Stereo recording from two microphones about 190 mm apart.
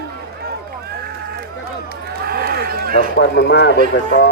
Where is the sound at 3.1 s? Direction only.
60° left (ahead or behind).